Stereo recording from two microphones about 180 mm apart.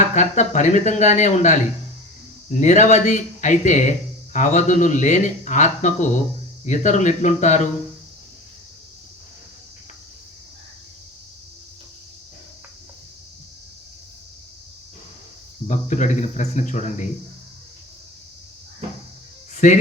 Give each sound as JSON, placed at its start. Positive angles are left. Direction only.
{"t": 0.1, "sound": "a man's voice", "side_deg": 40}
{"t": 15.6, "sound": "speech", "side_deg": 40}
{"t": 19.5, "sound": "speech", "side_deg": 40}